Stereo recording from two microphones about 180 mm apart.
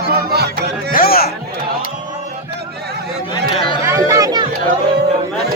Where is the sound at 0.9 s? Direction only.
55° left (ahead or behind).